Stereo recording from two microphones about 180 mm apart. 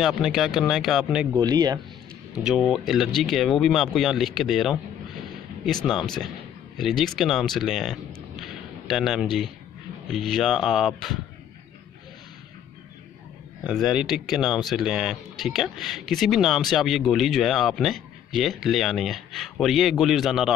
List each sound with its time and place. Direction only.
0.0 s speech: centre (ahead or behind)
1.3 s speech: 20° right (ahead or behind)
2.4 s speech: centre (ahead or behind)
5.9 s speech: centre (ahead or behind)
13.7 s speech: centre (ahead or behind)